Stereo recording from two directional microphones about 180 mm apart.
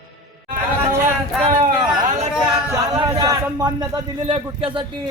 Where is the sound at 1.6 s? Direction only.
45° right (ahead or behind).